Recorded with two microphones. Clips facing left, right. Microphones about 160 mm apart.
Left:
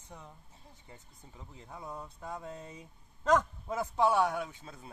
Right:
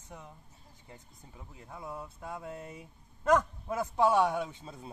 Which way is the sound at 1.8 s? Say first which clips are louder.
Right 2 dB; 5° right (ahead or behind).